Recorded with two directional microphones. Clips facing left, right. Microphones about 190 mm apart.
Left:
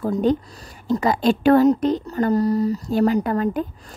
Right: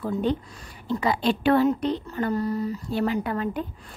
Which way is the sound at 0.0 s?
40° left (ahead or behind).